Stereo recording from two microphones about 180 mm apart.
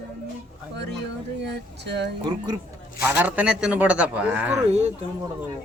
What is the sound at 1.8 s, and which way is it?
Speech, 70° right (ahead or behind).